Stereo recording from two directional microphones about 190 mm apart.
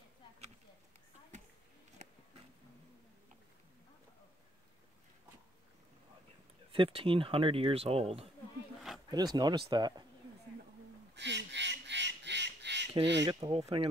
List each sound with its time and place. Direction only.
1.3 s a sound: 40° right (ahead or behind)
6.7 s speech: 30° right (ahead or behind)
9.1 s speech: 20° right (ahead or behind)
11.1 s duck: 65° right (ahead or behind)
13.2 s speech: 25° right (ahead or behind)